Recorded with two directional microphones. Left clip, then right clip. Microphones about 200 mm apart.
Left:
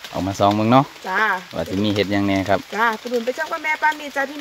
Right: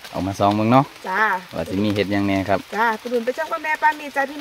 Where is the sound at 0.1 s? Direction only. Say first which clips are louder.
Left 1 dB; 5° left (ahead or behind).